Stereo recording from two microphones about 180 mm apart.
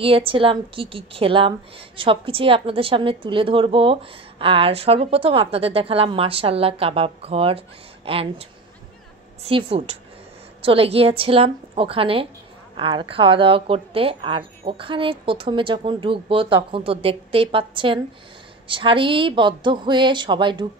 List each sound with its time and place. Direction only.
0.0 s a woman's voice: 30° right (ahead or behind)